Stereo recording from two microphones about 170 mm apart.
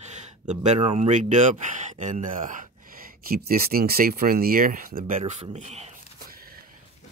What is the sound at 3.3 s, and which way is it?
Speech, 60° right (ahead or behind).